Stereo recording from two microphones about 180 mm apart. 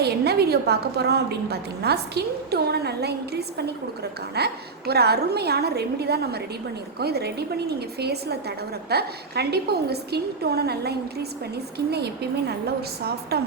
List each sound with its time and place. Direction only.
0.0 s a woman's voice: 65° right (ahead or behind)
13.3 s a woman's voice: 60° right (ahead or behind)